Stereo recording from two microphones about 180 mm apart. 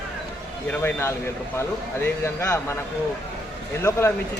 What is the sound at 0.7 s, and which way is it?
Speech, 15° left (ahead or behind).